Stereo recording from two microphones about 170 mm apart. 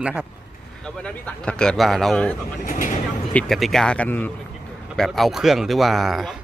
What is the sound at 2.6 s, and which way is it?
Speech, 50° left (ahead or behind).